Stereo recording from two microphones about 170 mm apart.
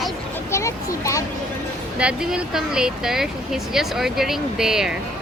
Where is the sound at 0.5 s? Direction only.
15° left (ahead or behind).